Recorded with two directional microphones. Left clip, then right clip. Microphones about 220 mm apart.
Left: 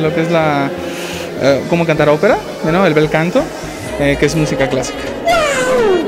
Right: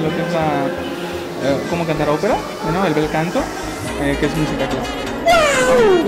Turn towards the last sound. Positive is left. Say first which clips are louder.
# even
turn(degrees=0)  # may be behind; listen again after turning